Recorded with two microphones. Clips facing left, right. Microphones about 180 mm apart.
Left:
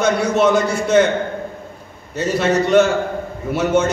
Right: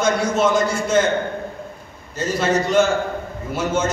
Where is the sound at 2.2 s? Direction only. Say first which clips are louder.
Left 3 dB; 65° left (ahead or behind).